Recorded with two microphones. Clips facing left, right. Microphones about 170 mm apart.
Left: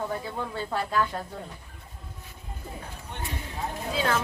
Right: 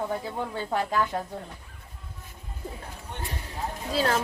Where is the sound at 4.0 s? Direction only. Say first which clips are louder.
Right 2 dB; 35° right (ahead or behind).